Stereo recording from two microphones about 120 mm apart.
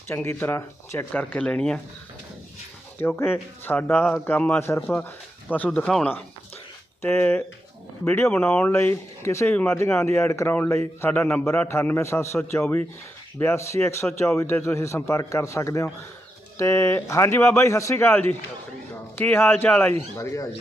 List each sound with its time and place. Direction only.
0.1 s speech: 15° left (ahead or behind)
3.0 s a man's voice: 20° left (ahead or behind)
13.4 s a man's voice: 20° left (ahead or behind)
20.0 s a man's voice: 25° left (ahead or behind)